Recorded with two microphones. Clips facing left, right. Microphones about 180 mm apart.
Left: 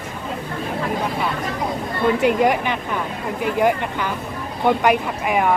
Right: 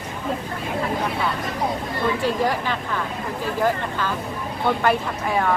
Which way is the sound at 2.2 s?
20° left (ahead or behind).